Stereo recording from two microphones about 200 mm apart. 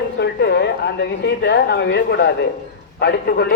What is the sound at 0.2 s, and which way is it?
A woman's voice, 60° left (ahead or behind).